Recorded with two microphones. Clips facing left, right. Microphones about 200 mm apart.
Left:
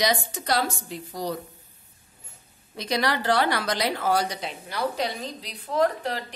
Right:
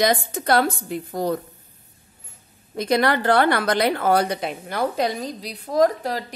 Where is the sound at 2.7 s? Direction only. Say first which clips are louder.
Right 6 dB; 50° right (ahead or behind).